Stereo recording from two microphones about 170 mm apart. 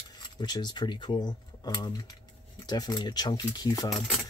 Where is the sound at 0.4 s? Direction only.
25° left (ahead or behind).